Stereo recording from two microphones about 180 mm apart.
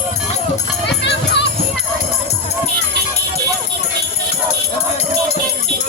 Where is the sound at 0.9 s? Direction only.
70° left (ahead or behind).